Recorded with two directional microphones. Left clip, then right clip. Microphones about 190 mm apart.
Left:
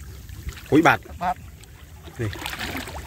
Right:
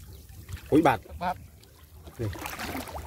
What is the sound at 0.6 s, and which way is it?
Speech, centre (ahead or behind).